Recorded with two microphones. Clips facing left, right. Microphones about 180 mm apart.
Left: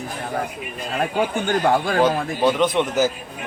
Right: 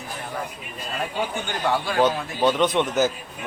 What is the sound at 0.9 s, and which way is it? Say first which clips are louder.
A man's voice: left 6 dB; 50° left (ahead or behind).